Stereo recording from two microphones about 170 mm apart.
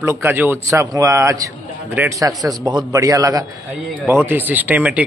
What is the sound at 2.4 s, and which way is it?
A man's voice, 20° right (ahead or behind).